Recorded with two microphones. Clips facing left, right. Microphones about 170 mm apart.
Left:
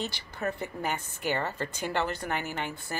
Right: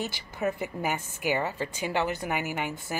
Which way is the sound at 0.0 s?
15° right (ahead or behind).